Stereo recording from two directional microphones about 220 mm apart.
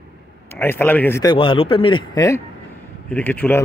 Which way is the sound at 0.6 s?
10° left (ahead or behind).